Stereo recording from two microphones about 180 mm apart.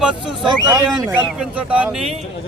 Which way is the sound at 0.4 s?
20° right (ahead or behind).